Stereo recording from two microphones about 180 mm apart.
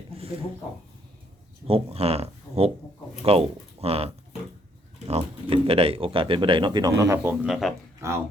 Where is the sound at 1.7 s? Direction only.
35° right (ahead or behind).